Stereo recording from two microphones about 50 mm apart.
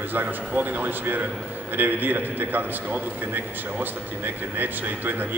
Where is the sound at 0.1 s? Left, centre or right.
Right.